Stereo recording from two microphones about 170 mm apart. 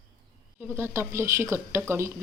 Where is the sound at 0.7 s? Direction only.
15° right (ahead or behind).